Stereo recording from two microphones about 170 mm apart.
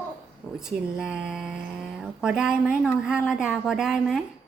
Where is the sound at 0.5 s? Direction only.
5° right (ahead or behind).